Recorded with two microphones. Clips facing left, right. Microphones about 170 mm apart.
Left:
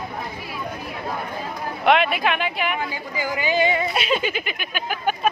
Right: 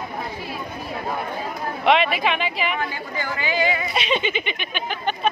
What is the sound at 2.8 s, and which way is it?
Speech, 15° left (ahead or behind).